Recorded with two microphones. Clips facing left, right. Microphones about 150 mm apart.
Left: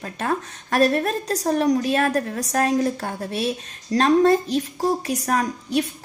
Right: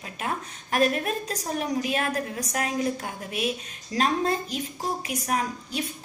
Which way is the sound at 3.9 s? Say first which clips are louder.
Left 9 dB; 75° left (ahead or behind).